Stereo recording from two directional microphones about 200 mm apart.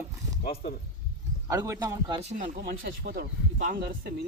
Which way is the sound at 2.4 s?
50° right (ahead or behind).